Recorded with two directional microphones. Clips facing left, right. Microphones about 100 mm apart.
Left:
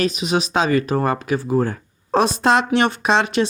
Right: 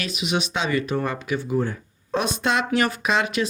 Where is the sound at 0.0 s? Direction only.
40° left (ahead or behind).